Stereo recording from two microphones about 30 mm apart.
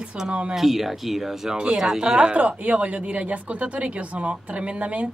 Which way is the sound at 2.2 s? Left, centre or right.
Right.